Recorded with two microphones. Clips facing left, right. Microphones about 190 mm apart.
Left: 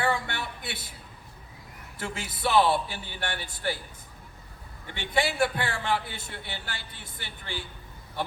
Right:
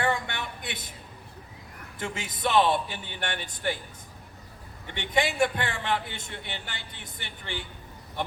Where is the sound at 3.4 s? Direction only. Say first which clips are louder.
Right 2 dB; 10° left (ahead or behind).